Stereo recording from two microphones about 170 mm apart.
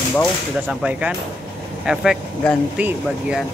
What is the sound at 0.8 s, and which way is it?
Speech, 5° right (ahead or behind).